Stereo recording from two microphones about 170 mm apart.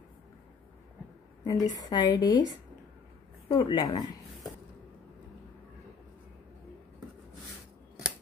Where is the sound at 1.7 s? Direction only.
25° left (ahead or behind).